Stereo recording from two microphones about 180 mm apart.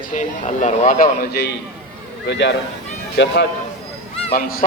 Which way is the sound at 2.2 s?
80° left.